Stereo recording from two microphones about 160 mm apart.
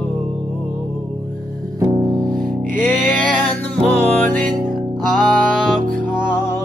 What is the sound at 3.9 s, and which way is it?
Music, 10° left (ahead or behind).